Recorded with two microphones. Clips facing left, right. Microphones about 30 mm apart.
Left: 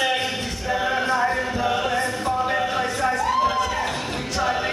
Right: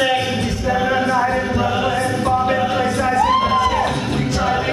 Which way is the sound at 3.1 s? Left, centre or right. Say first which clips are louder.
Right 9 dB; right.